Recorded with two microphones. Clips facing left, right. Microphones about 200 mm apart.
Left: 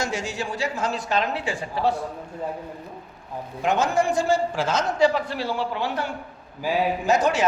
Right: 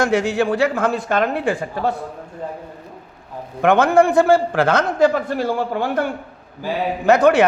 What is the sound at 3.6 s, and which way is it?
A man's voice, 60° right (ahead or behind).